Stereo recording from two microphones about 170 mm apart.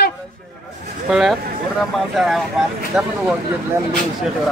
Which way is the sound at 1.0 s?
5° right (ahead or behind).